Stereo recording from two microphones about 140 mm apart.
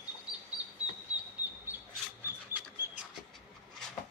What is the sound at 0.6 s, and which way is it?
Bird, 10° right (ahead or behind).